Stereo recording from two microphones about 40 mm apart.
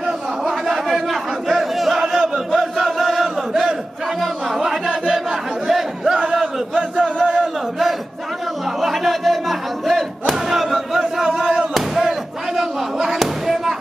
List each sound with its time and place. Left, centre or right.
0.5 s a sound: centre
2.0 s chant: centre
2.5 s battle cry: centre
4.6 s chant: centre
5.7 s crowd: centre
6.3 s chant: centre
8.8 s battle cry: centre
11.7 s a sound: centre